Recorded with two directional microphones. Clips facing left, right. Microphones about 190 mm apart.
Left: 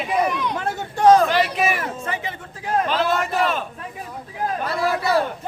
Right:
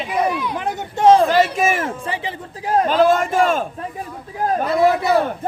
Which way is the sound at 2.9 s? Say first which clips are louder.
Right 6 dB; 45° right (ahead or behind).